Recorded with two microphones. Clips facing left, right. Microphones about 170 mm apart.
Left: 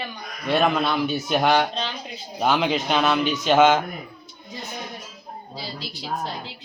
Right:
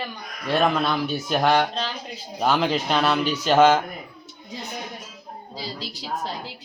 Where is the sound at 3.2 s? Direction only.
35° right (ahead or behind).